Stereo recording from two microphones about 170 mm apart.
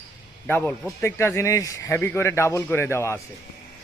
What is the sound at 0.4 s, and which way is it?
Speech, 10° left (ahead or behind).